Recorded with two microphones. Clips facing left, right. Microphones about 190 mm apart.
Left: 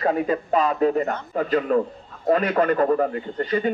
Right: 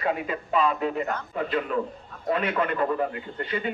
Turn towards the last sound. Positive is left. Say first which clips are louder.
# left 7 dB
turn(degrees=40)  # may be behind; listen again after turning